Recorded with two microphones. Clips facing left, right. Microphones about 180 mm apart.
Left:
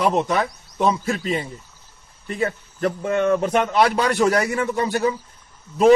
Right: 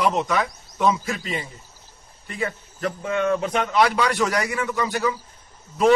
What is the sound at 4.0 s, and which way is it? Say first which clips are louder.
Speech: left 4 dB; 30° left (ahead or behind).